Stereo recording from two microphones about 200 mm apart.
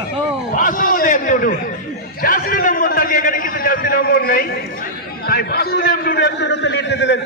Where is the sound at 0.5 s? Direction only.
40° left (ahead or behind).